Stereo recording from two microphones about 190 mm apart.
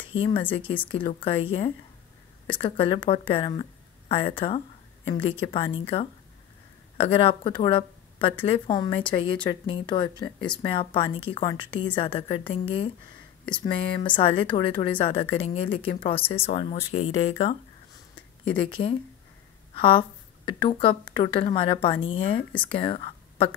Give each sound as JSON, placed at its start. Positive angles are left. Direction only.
{"t": 0.0, "sound": "a woman's voice", "side_deg": 25}